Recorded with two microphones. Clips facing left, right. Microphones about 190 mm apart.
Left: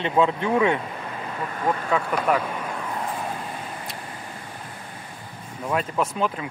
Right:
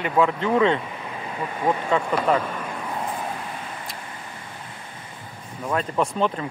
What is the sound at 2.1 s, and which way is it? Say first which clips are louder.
Speech: right 1 dB; 5° left (ahead or behind).